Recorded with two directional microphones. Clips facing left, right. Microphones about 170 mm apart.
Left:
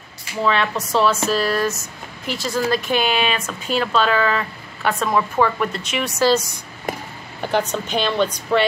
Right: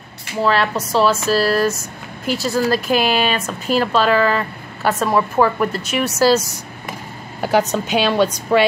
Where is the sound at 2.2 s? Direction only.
5° right (ahead or behind).